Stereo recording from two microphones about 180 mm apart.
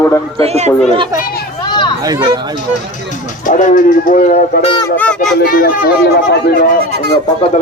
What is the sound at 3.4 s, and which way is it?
Speech, 45° left (ahead or behind).